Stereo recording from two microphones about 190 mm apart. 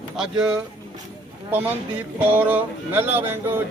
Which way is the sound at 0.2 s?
5° right (ahead or behind).